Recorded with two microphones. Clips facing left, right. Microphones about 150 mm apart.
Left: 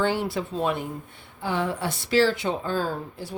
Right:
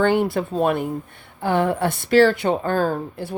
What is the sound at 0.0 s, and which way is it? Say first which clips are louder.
A woman's voice: right 6 dB; 55° right (ahead or behind).